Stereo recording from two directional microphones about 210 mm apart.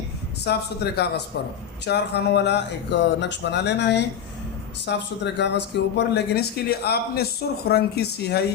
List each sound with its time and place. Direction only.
0.4 s speech: 50° left (ahead or behind)